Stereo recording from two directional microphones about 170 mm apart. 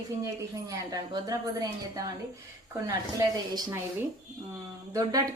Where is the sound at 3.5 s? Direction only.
25° right (ahead or behind).